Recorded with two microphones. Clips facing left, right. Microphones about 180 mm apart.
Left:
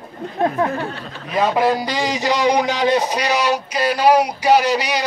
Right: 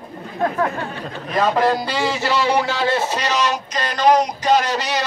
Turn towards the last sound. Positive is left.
turn(degrees=10)  # may be behind; listen again after turning